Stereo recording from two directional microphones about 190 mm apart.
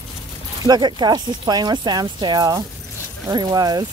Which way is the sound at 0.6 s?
20° right (ahead or behind).